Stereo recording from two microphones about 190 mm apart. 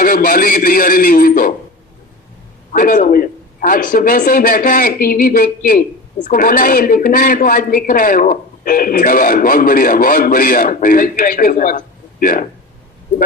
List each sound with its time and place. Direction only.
0.0 s a man's voice: 45° left (ahead or behind)
2.7 s a man's voice: 45° left (ahead or behind)